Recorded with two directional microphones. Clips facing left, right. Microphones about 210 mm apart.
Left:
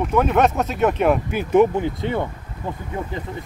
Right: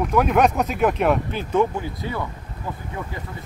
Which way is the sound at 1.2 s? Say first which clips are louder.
Left 5 dB; 15° left (ahead or behind).